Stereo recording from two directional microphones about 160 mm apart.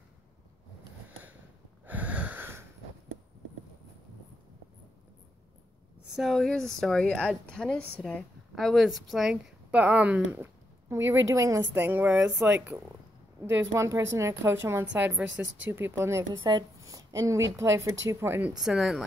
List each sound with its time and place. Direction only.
1.9 s a sound: 10° right (ahead or behind)
6.1 s a woman's voice: centre (ahead or behind); by 18.5 s 15° right (ahead or behind)
18.6 s speech: centre (ahead or behind)